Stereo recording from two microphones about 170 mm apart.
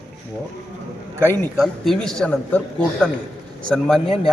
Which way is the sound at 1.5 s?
Centre (ahead or behind).